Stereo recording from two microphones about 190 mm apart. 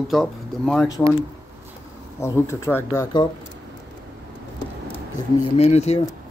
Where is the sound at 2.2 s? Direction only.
15° left (ahead or behind).